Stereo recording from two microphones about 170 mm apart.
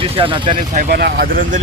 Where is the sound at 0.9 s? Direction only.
75° right (ahead or behind).